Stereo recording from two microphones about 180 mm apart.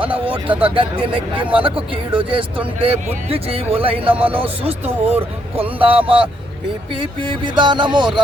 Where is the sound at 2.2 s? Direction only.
30° right (ahead or behind).